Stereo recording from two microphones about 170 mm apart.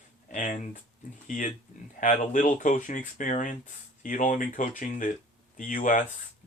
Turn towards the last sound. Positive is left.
turn(degrees=50)  # may be behind; listen again after turning